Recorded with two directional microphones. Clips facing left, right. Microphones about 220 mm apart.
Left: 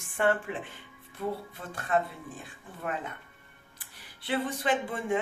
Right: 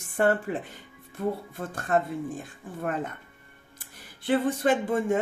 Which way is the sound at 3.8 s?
45° right (ahead or behind).